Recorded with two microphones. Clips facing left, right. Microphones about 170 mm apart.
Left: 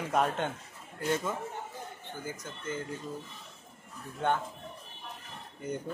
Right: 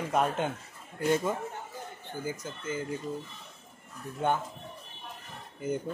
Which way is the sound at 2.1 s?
10° right (ahead or behind).